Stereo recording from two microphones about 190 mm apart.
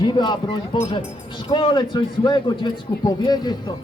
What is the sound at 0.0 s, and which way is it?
A man's voice, 25° left (ahead or behind).